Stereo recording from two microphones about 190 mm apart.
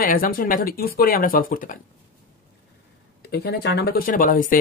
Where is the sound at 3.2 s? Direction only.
55° left (ahead or behind).